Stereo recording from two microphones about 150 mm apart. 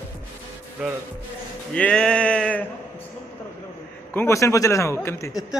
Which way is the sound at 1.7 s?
5° left (ahead or behind).